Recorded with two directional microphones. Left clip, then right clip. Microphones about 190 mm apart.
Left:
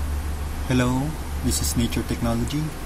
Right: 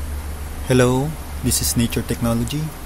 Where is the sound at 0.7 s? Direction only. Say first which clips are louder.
Right 7 dB; 40° right (ahead or behind).